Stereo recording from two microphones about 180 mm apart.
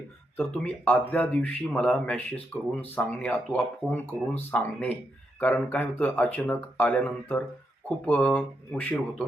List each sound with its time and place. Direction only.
0.3 s speech: 10° left (ahead or behind)